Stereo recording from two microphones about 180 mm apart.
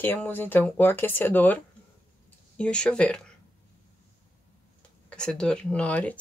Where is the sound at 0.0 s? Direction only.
10° left (ahead or behind).